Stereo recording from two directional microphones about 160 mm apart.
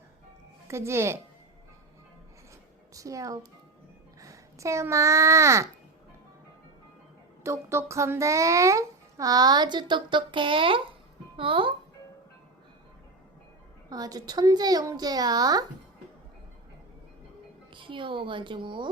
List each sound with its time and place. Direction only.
0.7 s speech: 15° right (ahead or behind)
2.9 s a child's voice: 20° right (ahead or behind)
7.4 s a child's voice: 15° right (ahead or behind); by 11.7 s 35° right (ahead or behind)
13.9 s a child's voice: 25° right (ahead or behind)
17.7 s a woman's voice: 30° right (ahead or behind)